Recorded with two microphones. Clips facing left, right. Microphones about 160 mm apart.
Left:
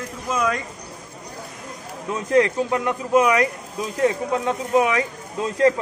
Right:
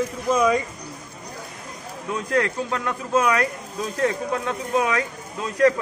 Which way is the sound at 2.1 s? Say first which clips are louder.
Left 5 dB; 20° left (ahead or behind).